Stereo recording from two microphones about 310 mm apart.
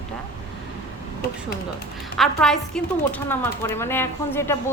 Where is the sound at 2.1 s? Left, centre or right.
Centre.